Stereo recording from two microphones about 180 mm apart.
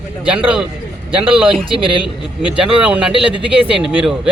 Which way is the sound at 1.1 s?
30° right (ahead or behind).